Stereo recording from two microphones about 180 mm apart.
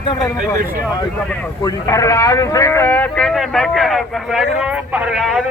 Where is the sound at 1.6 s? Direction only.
20° left (ahead or behind).